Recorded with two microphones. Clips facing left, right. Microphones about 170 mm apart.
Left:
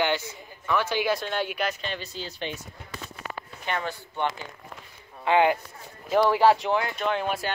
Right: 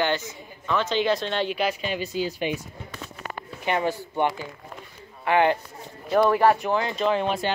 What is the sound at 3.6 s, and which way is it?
Speech, 15° right (ahead or behind).